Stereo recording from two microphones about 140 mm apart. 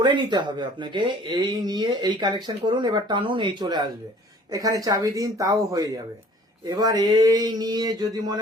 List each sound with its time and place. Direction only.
0.0 s speech: 35° right (ahead or behind)